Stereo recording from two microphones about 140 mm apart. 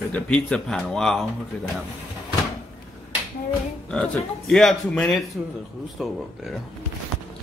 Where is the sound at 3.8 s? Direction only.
5° left (ahead or behind).